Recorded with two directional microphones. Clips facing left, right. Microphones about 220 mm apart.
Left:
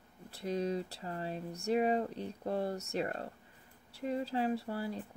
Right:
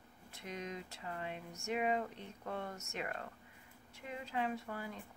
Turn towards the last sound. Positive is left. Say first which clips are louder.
# left 7 dB
turn(degrees=35)  # may be behind; listen again after turning